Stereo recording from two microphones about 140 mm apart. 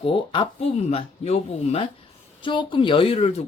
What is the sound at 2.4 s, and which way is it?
Speech, 35° left (ahead or behind).